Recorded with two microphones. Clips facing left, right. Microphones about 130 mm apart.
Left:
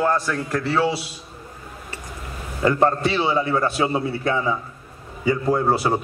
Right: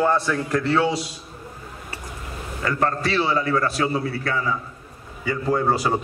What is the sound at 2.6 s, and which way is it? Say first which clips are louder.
A man's voice: left 5 dB; 25° left (ahead or behind).